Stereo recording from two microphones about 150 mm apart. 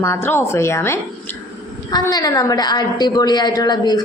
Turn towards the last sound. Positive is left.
turn(degrees=30)  # may be behind; listen again after turning